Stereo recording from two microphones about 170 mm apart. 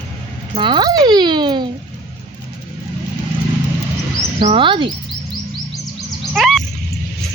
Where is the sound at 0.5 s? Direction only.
30° right (ahead or behind).